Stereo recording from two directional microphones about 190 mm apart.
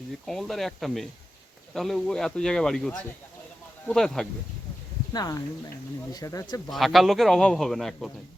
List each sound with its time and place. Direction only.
0.3 s a man's voice: centre (ahead or behind)
5.1 s speech: 20° left (ahead or behind)
6.7 s a man's voice: centre (ahead or behind)